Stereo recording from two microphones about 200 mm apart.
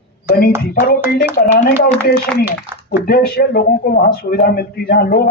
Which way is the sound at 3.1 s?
50° left (ahead or behind).